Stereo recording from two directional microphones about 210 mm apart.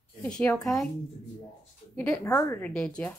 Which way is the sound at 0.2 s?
5° left (ahead or behind).